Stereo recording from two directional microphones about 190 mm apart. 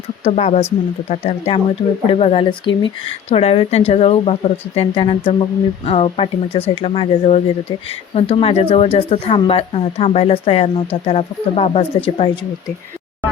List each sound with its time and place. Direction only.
0.3 s speech: 35° left (ahead or behind)